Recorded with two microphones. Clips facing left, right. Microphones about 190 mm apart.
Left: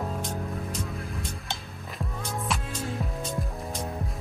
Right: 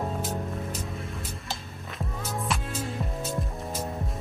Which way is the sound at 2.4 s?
Centre (ahead or behind).